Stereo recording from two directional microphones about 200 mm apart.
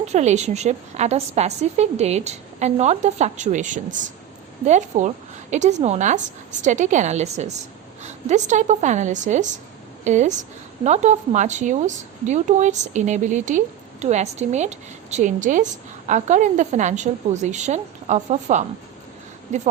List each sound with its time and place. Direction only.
0.0 s a woman's voice: 35° right (ahead or behind)